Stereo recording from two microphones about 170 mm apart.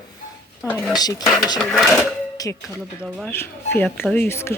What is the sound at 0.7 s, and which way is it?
Speech, 10° left (ahead or behind).